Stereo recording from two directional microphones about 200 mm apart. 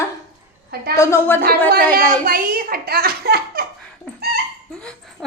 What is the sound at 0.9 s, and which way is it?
Speech, 15° left (ahead or behind).